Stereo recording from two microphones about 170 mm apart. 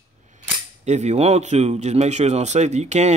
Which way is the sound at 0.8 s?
40° right (ahead or behind).